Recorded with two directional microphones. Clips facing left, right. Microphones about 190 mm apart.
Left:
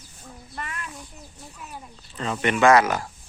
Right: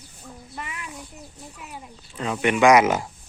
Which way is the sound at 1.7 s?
10° right (ahead or behind).